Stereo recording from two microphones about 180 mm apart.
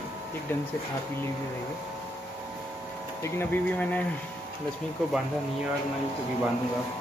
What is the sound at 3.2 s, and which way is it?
Speech, 10° left (ahead or behind).